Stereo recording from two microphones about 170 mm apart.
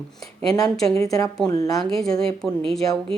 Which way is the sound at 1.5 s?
20° left (ahead or behind).